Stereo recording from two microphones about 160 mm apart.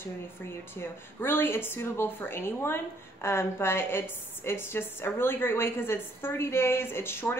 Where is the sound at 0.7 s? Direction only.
15° left (ahead or behind).